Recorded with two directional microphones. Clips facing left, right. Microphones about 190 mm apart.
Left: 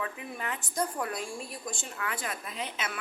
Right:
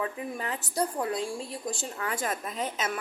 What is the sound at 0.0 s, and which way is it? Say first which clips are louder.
A woman's voice: right 4 dB; 35° right (ahead or behind).